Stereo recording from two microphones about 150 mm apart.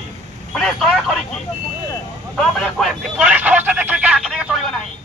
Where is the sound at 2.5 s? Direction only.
Centre (ahead or behind).